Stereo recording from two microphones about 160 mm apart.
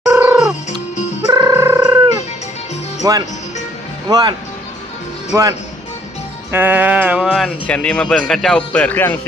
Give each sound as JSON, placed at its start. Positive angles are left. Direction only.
{"t": 0.2, "sound": "music", "side_deg": -5}
{"t": 1.3, "sound": "music", "side_deg": -25}
{"t": 1.5, "sound": "a sound", "side_deg": -15}
{"t": 3.0, "sound": "speech", "side_deg": -25}
{"t": 6.5, "sound": "speech", "side_deg": -10}